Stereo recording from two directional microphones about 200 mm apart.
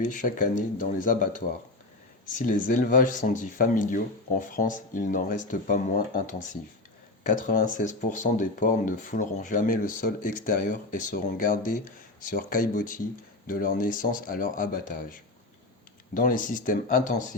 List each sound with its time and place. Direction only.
0.2 s speech: 40° left (ahead or behind)
7.3 s speech: 40° left (ahead or behind)